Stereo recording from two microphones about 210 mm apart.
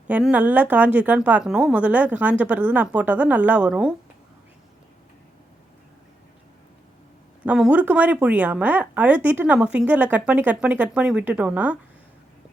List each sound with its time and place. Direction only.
0.1 s speech: 5° right (ahead or behind)
7.4 s speech: 5° right (ahead or behind)